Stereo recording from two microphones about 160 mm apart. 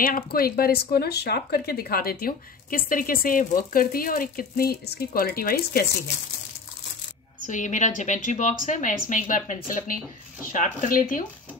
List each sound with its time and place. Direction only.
0.0 s speech: 65° left (ahead or behind)
7.4 s a woman's voice: 50° left (ahead or behind)